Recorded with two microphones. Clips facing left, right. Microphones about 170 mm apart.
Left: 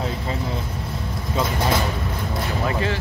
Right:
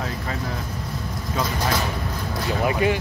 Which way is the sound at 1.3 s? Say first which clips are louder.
Left 2 dB; 25° left (ahead or behind).